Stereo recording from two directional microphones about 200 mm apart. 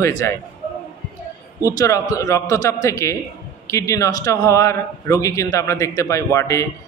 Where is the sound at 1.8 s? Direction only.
15° left (ahead or behind).